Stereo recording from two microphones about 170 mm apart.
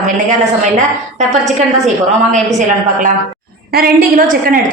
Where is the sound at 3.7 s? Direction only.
60° right (ahead or behind).